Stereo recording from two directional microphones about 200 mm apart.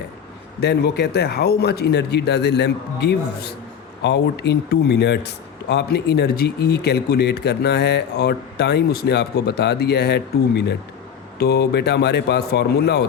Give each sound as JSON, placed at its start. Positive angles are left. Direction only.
{"t": 0.6, "sound": "speech", "side_deg": 55}